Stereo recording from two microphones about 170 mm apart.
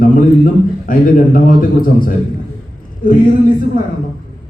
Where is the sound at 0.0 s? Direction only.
55° left (ahead or behind).